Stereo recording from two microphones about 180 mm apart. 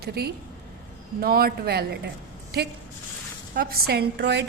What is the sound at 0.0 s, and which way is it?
A man's voice, 60° right (ahead or behind).